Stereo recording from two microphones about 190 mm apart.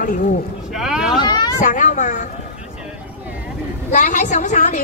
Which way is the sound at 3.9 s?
40° left (ahead or behind).